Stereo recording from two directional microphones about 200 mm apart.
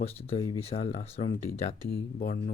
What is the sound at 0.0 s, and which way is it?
Speech, 30° left (ahead or behind).